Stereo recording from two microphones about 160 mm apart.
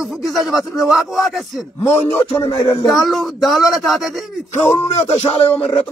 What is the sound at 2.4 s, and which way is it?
Speech, 35° left (ahead or behind).